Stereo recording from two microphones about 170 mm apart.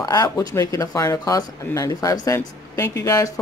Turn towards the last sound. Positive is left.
turn(degrees=20)  # may be behind; listen again after turning